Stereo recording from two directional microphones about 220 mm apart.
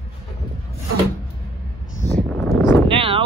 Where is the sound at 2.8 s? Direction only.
25° right (ahead or behind).